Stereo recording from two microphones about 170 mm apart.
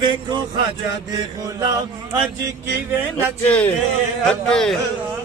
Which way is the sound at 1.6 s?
20° right (ahead or behind).